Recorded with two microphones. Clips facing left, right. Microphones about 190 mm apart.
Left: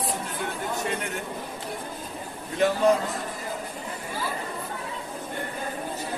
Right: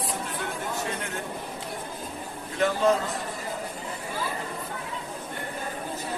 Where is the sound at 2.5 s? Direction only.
15° left (ahead or behind).